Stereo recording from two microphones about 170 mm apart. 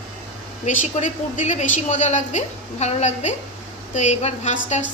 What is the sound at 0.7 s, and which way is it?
A woman's voice, 45° left (ahead or behind).